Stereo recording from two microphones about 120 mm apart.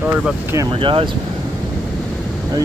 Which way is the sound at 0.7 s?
45° right (ahead or behind).